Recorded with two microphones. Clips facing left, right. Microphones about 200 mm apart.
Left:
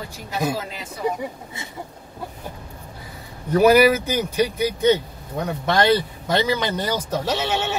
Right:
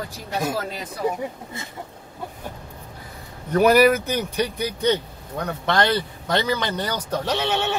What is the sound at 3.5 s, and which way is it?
Speech, 5° left (ahead or behind).